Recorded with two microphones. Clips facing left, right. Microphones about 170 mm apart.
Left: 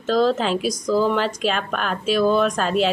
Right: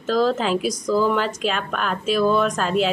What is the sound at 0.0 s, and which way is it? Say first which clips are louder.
A woman's voice: left 1 dB; centre (ahead or behind).